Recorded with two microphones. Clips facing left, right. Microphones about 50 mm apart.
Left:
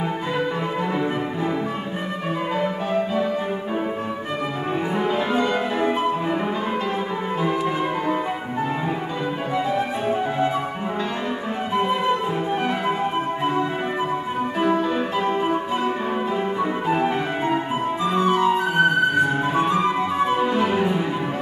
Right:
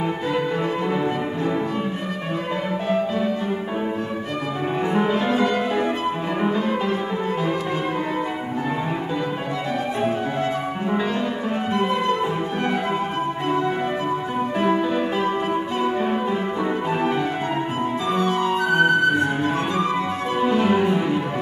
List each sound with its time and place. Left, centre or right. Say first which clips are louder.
11.7 s music: left 2 dB; centre
14.6 s music: even; centre
16.9 s music: even; centre
18.1 s flute: left 3 dB; centre
18.8 s music: right 1 dB; centre
20.3 s music: right 1 dB; centre